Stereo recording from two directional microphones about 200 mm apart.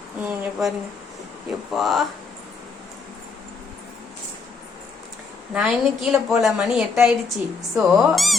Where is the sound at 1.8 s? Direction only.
Centre (ahead or behind).